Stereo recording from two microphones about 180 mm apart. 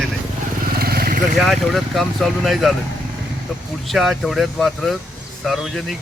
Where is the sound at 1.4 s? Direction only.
Centre (ahead or behind).